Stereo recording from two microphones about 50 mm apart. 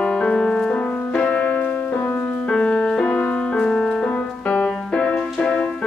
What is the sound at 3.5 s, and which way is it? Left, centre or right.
Music, centre.